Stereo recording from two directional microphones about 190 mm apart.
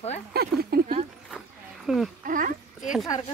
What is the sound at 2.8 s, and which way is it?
Speech, centre (ahead or behind).